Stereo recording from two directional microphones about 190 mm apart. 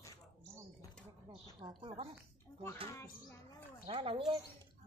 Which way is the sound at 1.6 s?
25° right (ahead or behind).